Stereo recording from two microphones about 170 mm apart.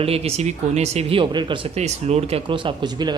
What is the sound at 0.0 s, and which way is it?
Speech, 35° right (ahead or behind).